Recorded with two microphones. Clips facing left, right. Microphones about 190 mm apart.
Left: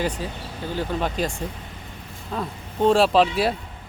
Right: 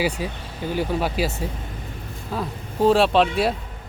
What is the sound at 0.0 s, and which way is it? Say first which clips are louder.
Speech: right 2 dB; 10° right (ahead or behind).